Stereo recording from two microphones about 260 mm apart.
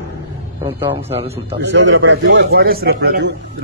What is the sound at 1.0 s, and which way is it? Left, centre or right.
Speech, right.